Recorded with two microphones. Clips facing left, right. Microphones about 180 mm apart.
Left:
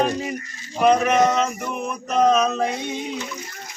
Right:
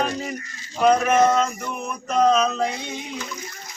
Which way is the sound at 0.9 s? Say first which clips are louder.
Left 1 dB; 5° right (ahead or behind).